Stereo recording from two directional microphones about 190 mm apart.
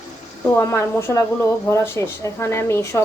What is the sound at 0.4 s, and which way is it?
A woman's voice, 15° left (ahead or behind).